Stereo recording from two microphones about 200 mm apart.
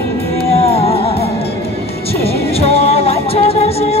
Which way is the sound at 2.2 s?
30° left (ahead or behind).